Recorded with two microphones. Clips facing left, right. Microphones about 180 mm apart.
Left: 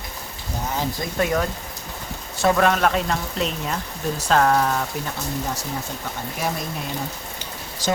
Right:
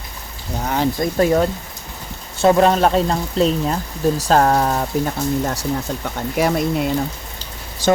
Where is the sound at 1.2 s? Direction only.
30° right (ahead or behind).